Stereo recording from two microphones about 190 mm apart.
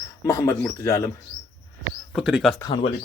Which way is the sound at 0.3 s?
15° left (ahead or behind).